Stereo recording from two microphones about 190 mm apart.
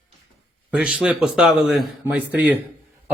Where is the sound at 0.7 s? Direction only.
5° right (ahead or behind).